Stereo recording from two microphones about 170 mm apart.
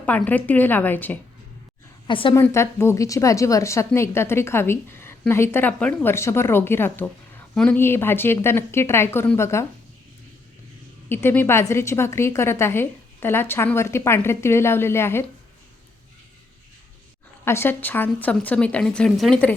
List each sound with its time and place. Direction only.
0.0 s a woman's voice: 10° left (ahead or behind)
2.0 s a woman's voice: 30° left (ahead or behind)
2.3 s a woman's voice: 15° left (ahead or behind)
11.1 s a woman's voice: 10° left (ahead or behind)
17.4 s a woman's voice: 15° left (ahead or behind)